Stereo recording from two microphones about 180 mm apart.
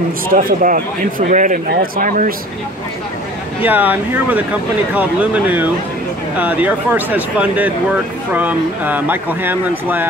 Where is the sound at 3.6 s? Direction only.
10° right (ahead or behind).